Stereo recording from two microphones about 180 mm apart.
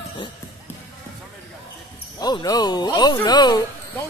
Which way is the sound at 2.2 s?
20° left (ahead or behind).